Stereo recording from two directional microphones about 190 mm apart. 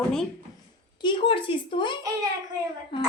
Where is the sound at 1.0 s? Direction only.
25° left (ahead or behind).